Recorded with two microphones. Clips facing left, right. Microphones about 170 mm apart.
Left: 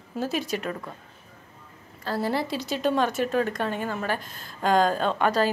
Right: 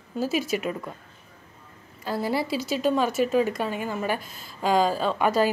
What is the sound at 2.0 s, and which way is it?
A woman's voice, 10° right (ahead or behind).